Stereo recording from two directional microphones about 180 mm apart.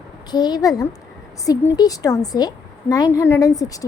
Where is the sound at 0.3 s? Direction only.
25° left (ahead or behind).